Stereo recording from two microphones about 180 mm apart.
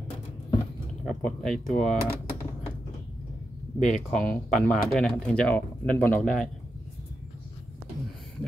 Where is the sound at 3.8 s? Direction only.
40° left (ahead or behind).